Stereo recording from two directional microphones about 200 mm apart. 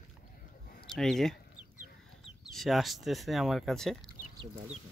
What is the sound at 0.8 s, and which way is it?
Speech, centre (ahead or behind).